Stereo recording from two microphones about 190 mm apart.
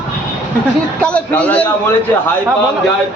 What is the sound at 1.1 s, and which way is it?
Speech, 5° left (ahead or behind).